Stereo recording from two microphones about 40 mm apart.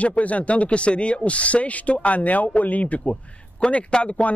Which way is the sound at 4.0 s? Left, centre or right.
Left.